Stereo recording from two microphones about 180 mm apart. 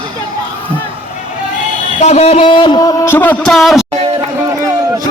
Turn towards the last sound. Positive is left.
turn(degrees=0)  # may be behind; listen again after turning